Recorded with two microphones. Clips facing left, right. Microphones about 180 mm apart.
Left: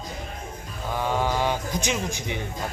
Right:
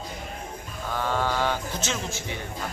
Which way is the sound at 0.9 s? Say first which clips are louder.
Left 2 dB; 15° left (ahead or behind).